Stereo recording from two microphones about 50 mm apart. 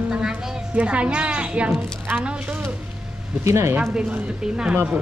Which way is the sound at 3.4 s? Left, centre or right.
Right.